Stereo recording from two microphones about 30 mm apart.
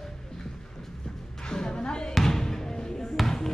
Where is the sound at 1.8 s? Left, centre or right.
Left.